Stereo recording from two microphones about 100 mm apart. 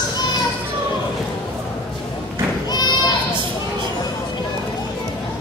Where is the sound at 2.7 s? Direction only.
45° left (ahead or behind).